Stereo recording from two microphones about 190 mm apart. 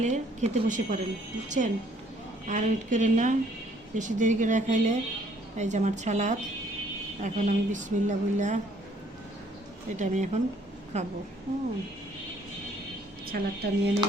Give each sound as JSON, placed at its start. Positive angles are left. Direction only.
{"t": 0.0, "sound": "a woman's voice", "side_deg": -35}
{"t": 10.0, "sound": "a woman's voice", "side_deg": -40}
{"t": 13.3, "sound": "speech", "side_deg": -55}